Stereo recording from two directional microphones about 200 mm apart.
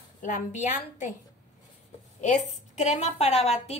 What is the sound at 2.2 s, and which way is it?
A woman's voice, 35° left (ahead or behind).